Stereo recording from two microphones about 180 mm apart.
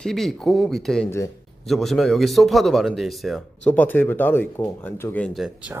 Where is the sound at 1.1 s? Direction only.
15° left (ahead or behind).